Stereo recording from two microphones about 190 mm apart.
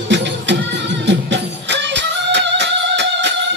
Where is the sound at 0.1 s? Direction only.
70° right (ahead or behind).